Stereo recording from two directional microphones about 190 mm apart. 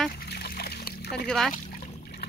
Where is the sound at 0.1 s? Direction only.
55° left (ahead or behind).